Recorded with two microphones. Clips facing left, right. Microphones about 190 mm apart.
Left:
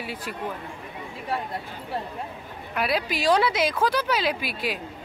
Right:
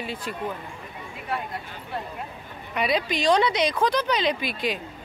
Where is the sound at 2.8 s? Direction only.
5° left (ahead or behind).